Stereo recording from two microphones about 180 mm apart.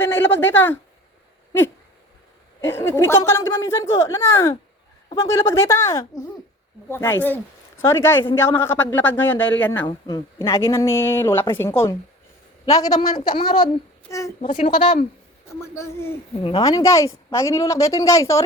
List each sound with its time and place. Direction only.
0.0 s speech: 15° left (ahead or behind)
2.6 s a man's voice: 15° left (ahead or behind)
14.4 s speech: 40° left (ahead or behind)
15.7 s speech: 15° left (ahead or behind)
16.4 s speech: 30° left (ahead or behind)
16.6 s speech: 20° left (ahead or behind)